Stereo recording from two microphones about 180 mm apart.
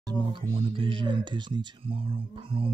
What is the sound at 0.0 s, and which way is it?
Speech, 25° right (ahead or behind).